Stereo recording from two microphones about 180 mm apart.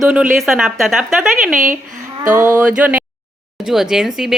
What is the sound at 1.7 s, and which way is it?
Speech, 50° right (ahead or behind).